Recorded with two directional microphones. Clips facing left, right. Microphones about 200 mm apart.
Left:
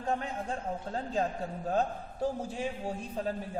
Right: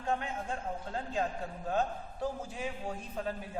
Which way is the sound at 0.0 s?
35° left (ahead or behind).